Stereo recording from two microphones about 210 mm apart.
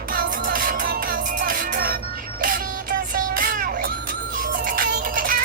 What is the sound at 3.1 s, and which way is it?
Music, 40° right (ahead or behind).